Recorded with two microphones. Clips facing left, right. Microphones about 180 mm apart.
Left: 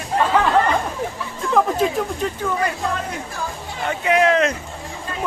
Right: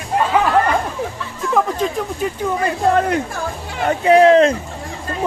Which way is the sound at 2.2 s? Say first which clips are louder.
Right 2 dB; 5° right (ahead or behind).